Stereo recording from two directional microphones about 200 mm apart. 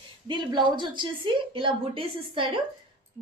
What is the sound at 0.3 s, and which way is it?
A woman's voice, 25° right (ahead or behind).